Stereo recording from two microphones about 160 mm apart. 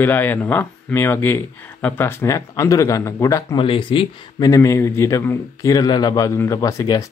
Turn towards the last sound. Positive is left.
turn(degrees=20)  # may be behind; listen again after turning